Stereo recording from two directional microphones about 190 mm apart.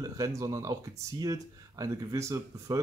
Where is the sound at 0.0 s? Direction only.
15° right (ahead or behind).